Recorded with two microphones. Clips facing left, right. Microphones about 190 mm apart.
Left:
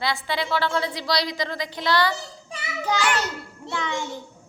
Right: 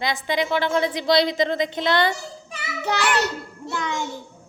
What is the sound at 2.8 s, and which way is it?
Speech, 65° right (ahead or behind).